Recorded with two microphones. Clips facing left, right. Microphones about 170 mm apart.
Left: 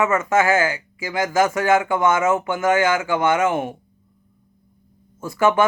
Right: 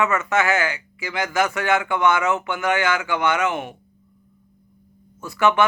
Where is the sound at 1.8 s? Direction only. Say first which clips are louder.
Left 2 dB; 20° left (ahead or behind).